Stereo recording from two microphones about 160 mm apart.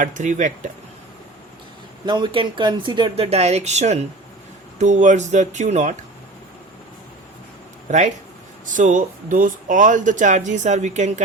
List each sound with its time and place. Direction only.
0.0 s speech: 50° right (ahead or behind)
2.0 s speech: 30° right (ahead or behind); by 5.9 s 50° right (ahead or behind)
7.9 s speech: 50° right (ahead or behind)